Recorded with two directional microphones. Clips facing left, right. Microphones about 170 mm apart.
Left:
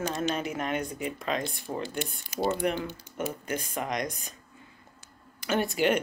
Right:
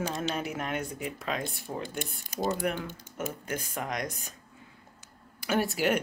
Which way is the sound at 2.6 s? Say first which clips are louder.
Left 3 dB; 5° right (ahead or behind).